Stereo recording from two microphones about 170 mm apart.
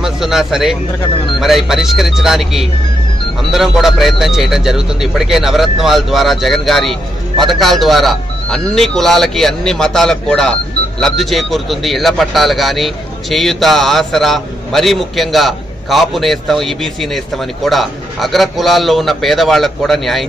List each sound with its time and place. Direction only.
0.0 s speech: centre (ahead or behind)